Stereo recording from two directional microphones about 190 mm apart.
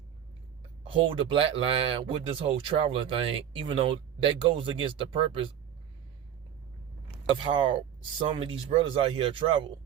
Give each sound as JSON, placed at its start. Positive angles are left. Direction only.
{"t": 1.0, "sound": "speech", "side_deg": -30}
{"t": 7.3, "sound": "speech", "side_deg": -25}